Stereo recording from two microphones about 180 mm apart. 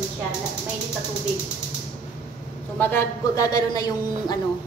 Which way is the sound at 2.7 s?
10° left (ahead or behind).